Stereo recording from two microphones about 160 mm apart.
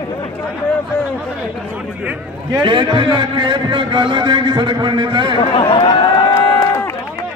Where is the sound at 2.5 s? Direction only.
30° right (ahead or behind).